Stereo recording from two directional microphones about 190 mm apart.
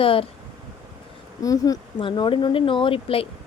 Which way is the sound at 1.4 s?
20° left (ahead or behind).